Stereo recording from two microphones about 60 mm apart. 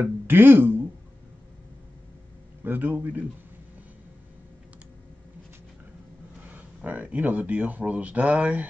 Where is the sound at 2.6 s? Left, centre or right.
Right.